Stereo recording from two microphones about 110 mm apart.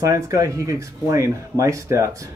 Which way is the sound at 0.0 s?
30° right (ahead or behind).